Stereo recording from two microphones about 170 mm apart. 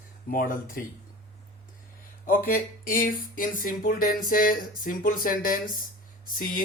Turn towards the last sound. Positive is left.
turn(degrees=55)  # may be behind; listen again after turning